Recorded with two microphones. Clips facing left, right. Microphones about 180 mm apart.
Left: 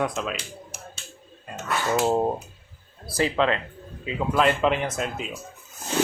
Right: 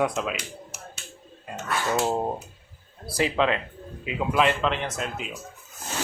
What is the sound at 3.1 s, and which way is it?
Speech, 10° right (ahead or behind).